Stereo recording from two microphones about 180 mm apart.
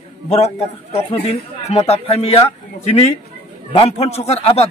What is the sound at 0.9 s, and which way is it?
A man's voice, 35° left (ahead or behind).